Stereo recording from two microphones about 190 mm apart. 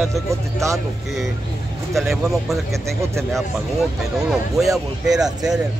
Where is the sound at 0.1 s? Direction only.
15° right (ahead or behind).